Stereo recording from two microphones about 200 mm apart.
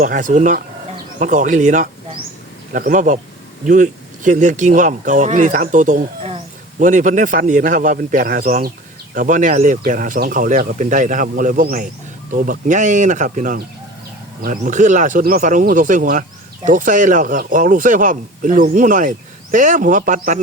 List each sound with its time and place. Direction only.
0.0 s speech: 40° right (ahead or behind)